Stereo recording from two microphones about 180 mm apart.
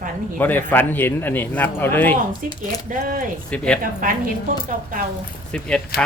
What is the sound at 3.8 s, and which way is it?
Speech, 50° right (ahead or behind).